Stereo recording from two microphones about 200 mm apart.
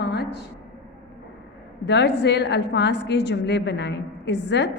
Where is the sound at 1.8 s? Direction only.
60° left (ahead or behind).